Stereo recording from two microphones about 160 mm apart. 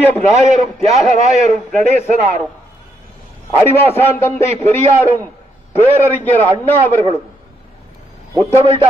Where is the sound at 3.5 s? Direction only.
15° left (ahead or behind).